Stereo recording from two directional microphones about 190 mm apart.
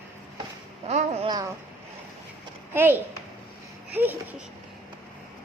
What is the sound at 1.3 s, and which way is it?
Speech, 20° right (ahead or behind).